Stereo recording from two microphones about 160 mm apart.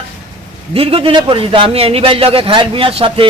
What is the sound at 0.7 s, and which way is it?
A man's voice, 35° right (ahead or behind).